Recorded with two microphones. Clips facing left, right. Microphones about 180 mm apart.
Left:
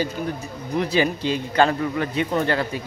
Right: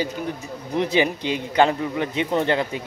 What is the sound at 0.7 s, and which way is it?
Speech, 20° right (ahead or behind).